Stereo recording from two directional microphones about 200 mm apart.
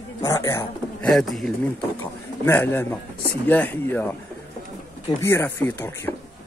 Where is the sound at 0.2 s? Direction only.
15° left (ahead or behind).